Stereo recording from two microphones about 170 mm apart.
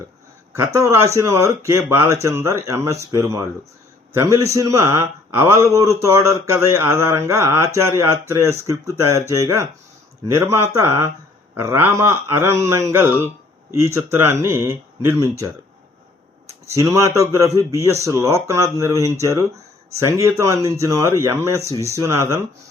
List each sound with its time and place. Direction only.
0.5 s a man's voice: 15° right (ahead or behind)
16.6 s a man's voice: 15° right (ahead or behind)